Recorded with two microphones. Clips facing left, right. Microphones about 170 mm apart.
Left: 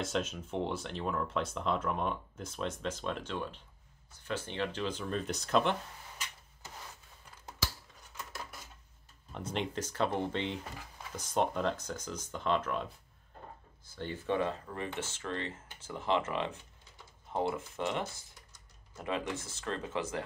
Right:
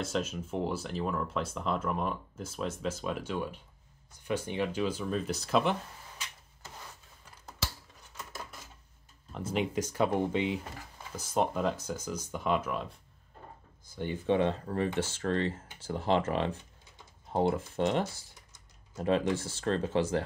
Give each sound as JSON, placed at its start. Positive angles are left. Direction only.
{"t": 0.0, "sound": "speech", "side_deg": 0}
{"t": 9.3, "sound": "speech", "side_deg": -5}
{"t": 13.8, "sound": "speech", "side_deg": -15}
{"t": 15.0, "sound": "speech", "side_deg": -35}